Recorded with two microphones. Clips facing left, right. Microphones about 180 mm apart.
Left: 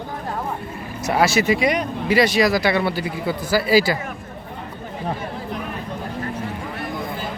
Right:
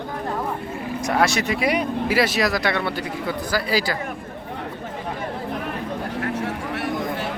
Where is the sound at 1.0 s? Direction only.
5° left (ahead or behind).